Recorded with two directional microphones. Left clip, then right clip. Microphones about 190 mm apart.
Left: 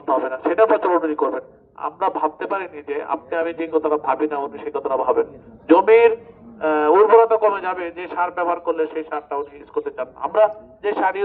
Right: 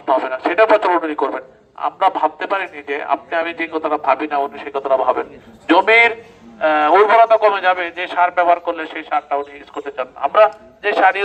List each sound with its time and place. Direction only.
0.0 s a man's voice: 25° right (ahead or behind)